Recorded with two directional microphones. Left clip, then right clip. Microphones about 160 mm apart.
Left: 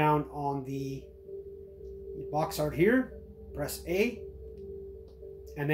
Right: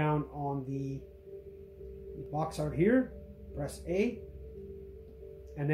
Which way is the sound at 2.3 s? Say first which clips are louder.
Left 4 dB; 5° left (ahead or behind).